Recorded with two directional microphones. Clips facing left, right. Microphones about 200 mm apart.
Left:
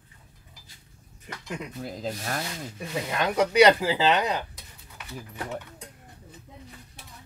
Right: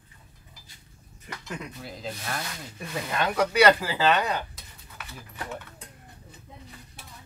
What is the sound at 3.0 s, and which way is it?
Speech, 15° left (ahead or behind).